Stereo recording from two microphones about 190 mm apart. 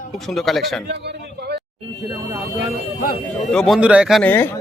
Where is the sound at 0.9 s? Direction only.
60° right (ahead or behind).